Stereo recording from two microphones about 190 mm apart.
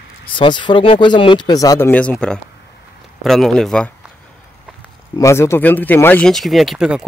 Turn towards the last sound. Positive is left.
turn(degrees=-5)  # may be behind; listen again after turning